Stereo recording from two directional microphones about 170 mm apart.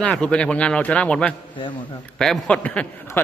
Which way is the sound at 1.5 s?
30° left (ahead or behind).